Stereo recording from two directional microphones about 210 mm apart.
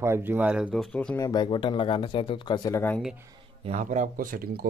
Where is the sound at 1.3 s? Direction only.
20° left (ahead or behind).